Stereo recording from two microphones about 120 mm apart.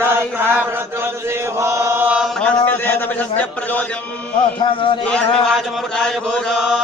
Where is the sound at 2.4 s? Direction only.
15° left (ahead or behind).